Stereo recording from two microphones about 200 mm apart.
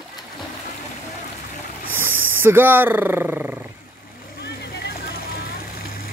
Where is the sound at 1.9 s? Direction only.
10° right (ahead or behind).